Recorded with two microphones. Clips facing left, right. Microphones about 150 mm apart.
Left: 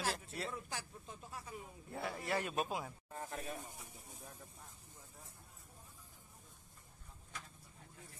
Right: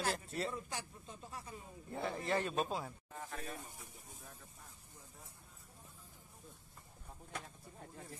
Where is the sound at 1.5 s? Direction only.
15° left (ahead or behind).